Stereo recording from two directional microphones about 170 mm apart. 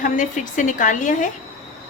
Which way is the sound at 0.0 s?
50° left (ahead or behind).